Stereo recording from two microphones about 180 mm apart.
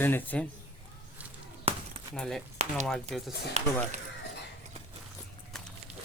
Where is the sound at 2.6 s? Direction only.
35° right (ahead or behind).